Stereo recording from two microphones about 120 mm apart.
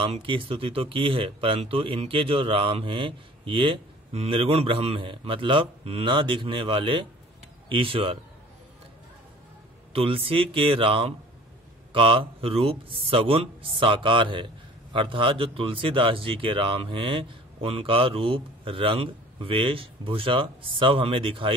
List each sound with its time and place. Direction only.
0.0 s speech: 45° right (ahead or behind)
9.9 s speech: 50° right (ahead or behind)